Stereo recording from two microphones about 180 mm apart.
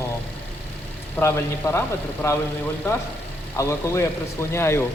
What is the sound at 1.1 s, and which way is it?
Speech, 15° left (ahead or behind).